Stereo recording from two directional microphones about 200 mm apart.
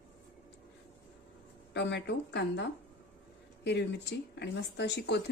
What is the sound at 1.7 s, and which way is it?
Speech, 60° left (ahead or behind).